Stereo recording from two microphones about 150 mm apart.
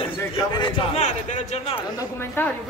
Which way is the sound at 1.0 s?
50° left (ahead or behind).